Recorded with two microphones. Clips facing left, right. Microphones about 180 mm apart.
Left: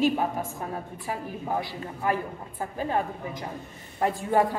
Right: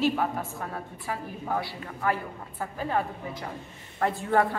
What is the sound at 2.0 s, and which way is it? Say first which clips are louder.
A woman's voice: left 1 dB; 20° left (ahead or behind).